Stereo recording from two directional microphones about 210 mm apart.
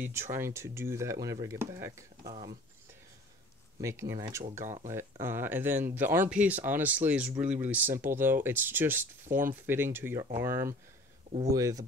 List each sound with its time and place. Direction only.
0.0 s speech: 10° right (ahead or behind)
3.8 s speech: 15° right (ahead or behind)